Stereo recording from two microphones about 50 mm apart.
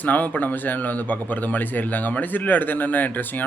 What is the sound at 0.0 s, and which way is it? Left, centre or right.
A man's voice, left.